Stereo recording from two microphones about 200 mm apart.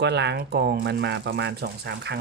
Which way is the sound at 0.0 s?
60° right (ahead or behind).